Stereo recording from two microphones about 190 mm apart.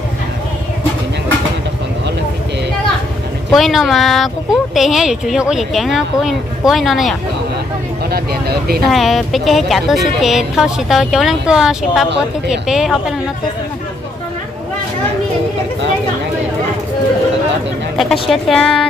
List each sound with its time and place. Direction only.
3.5 s speech: centre (ahead or behind)
8.1 s speech: 55° right (ahead or behind)
8.8 s speech: centre (ahead or behind)
17.9 s speech: centre (ahead or behind)